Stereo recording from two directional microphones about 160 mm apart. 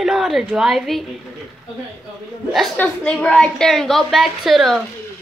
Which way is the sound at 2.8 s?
5° left (ahead or behind).